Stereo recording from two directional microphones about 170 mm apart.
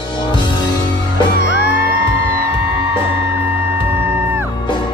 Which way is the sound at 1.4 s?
90° left.